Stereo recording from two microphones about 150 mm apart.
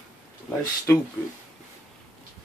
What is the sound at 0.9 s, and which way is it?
Speech, 15° left (ahead or behind).